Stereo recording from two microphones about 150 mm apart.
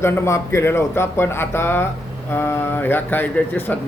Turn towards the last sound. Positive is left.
turn(degrees=10)  # may be behind; listen again after turning